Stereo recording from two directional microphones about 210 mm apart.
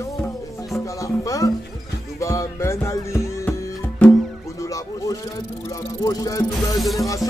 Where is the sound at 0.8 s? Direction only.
15° left (ahead or behind).